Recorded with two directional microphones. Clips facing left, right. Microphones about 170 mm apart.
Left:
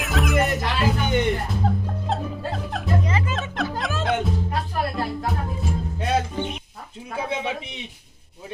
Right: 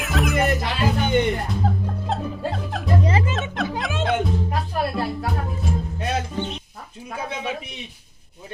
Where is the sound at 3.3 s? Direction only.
Centre (ahead or behind).